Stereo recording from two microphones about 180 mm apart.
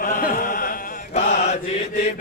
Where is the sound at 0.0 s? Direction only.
50° left (ahead or behind).